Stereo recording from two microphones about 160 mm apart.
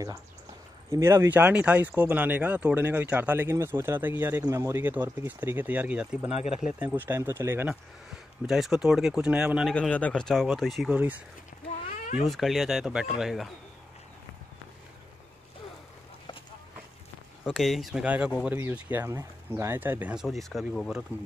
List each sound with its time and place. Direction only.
0.8 s speech: 15° right (ahead or behind)
6.3 s speech: 40° left (ahead or behind)
6.6 s speech: 10° right (ahead or behind)
8.5 s speech: centre (ahead or behind)
9.8 s speech: 10° left (ahead or behind); by 11.2 s 10° right (ahead or behind)
11.5 s a sound: 75° left (ahead or behind)
12.2 s speech: centre (ahead or behind)
17.5 s speech: centre (ahead or behind)